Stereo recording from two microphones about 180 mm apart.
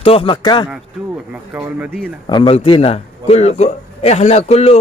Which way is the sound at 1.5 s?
10° right (ahead or behind).